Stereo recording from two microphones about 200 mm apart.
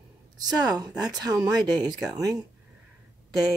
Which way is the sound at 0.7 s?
20° right (ahead or behind).